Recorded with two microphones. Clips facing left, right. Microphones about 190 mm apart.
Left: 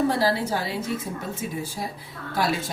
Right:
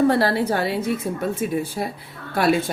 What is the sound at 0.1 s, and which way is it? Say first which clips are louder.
A woman's voice: right 4 dB; 60° right (ahead or behind).